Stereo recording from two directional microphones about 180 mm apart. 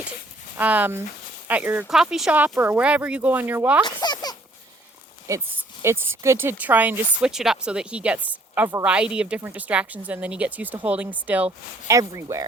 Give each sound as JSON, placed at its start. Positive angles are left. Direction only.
{"t": 0.5, "sound": "speech", "side_deg": -10}
{"t": 3.8, "sound": "a sound", "side_deg": 25}
{"t": 5.3, "sound": "speech", "side_deg": -15}